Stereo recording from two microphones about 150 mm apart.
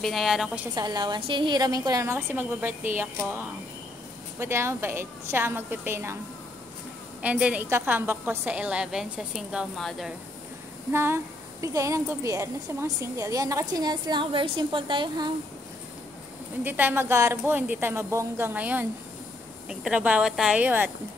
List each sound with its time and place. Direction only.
0.0 s a woman's voice: centre (ahead or behind)
0.7 s a woman's voice: 30° right (ahead or behind)
7.2 s a woman's voice: 10° right (ahead or behind)
10.9 s a woman's voice: 15° right (ahead or behind); by 15.3 s 30° right (ahead or behind)
16.6 s a woman's voice: 10° right (ahead or behind)